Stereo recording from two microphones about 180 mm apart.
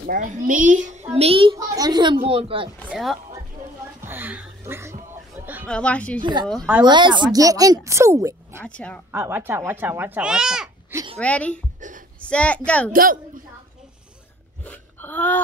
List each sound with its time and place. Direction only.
0.0 s a child's voice: 50° right (ahead or behind)
1.1 s a child's voice: 35° right (ahead or behind)
2.9 s speech: centre (ahead or behind)
4.0 s a sound: 10° right (ahead or behind)
5.7 s a woman's voice: 5° left (ahead or behind)
6.8 s a child's voice: 25° right (ahead or behind)
8.6 s speech: 5° left (ahead or behind)
9.1 s speech: 10° right (ahead or behind)
11.1 s speech: 5° left (ahead or behind)
11.8 s a sound: 45° right (ahead or behind)
12.2 s speech: 5° left (ahead or behind)
12.9 s a child's voice: 50° right (ahead or behind)
14.6 s whimper: 10° left (ahead or behind)